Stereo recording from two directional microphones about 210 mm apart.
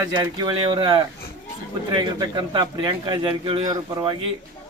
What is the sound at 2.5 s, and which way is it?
A man's voice, 20° right (ahead or behind).